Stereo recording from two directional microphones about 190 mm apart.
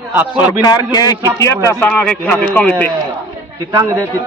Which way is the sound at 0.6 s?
20° left (ahead or behind).